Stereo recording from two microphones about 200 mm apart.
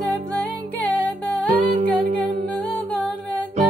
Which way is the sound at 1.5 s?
45° right (ahead or behind).